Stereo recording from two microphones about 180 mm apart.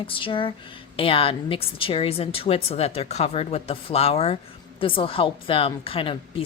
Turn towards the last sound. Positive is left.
turn(degrees=30)  # may be behind; listen again after turning